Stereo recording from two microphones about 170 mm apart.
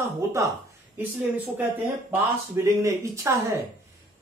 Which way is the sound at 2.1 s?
15° right (ahead or behind).